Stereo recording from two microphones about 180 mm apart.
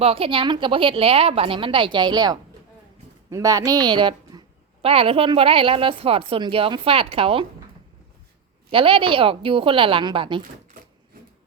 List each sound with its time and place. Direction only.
0.0 s a woman's voice: 30° right (ahead or behind)
8.7 s a woman's voice: 30° right (ahead or behind)